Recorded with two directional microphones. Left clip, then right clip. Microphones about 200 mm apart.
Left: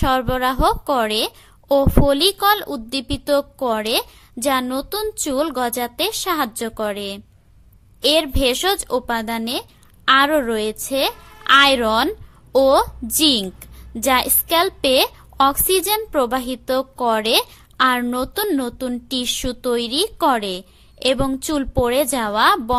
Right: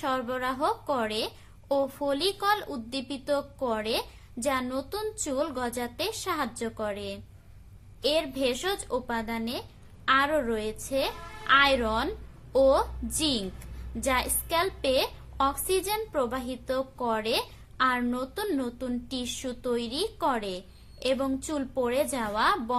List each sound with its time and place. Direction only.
0.0 s a woman's voice: 45° left (ahead or behind)